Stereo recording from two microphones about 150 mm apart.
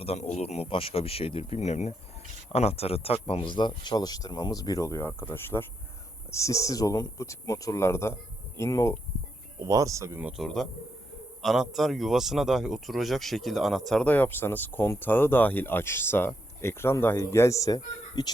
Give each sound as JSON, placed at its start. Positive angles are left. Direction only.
{"t": 0.0, "sound": "speech", "side_deg": 50}
{"t": 9.6, "sound": "speech", "side_deg": -20}
{"t": 10.4, "sound": "a man's voice", "side_deg": 0}